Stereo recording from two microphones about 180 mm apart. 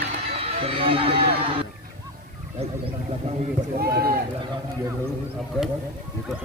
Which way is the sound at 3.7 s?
60° right (ahead or behind).